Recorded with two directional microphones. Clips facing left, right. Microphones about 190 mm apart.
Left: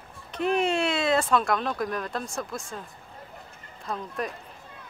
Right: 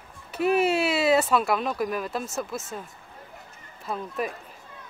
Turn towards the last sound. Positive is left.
turn(degrees=-5)  # may be behind; listen again after turning